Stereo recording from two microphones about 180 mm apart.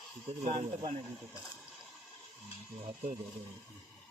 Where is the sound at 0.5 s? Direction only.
25° right (ahead or behind).